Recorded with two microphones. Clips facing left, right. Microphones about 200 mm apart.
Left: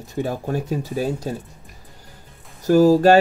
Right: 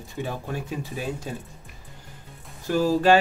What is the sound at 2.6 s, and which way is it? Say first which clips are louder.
Speech: left 8 dB; 40° left (ahead or behind).